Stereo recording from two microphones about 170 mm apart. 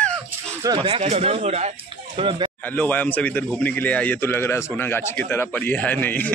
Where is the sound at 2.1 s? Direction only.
30° right (ahead or behind).